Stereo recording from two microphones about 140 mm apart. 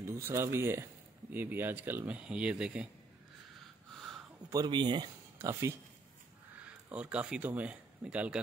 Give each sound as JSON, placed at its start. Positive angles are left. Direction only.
{"t": 0.0, "sound": "speech", "side_deg": -20}
{"t": 4.5, "sound": "speech", "side_deg": -30}
{"t": 5.4, "sound": "speech", "side_deg": -20}